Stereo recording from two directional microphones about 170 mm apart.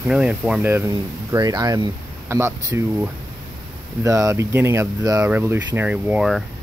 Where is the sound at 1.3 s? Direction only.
20° right (ahead or behind); by 6.4 s centre (ahead or behind).